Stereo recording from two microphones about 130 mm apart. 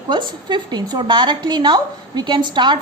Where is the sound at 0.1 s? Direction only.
35° right (ahead or behind).